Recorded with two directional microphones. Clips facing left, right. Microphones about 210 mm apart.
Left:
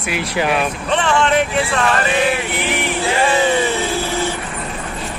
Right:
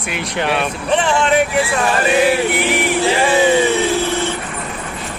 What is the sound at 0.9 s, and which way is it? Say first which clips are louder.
Speech: right 1 dB; 15° right (ahead or behind).